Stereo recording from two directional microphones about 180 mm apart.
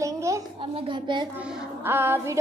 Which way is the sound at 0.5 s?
30° right (ahead or behind).